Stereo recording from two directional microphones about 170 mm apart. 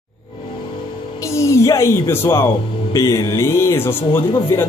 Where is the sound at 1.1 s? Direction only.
15° left (ahead or behind).